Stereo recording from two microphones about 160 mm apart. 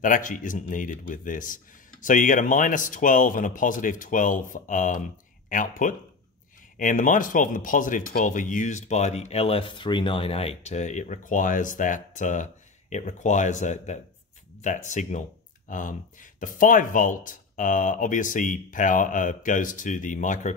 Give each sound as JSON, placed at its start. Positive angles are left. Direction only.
{"t": 0.0, "sound": "speech", "side_deg": 55}